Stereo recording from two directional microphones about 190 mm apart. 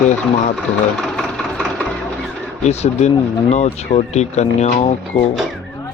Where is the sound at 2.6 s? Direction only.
35° left (ahead or behind).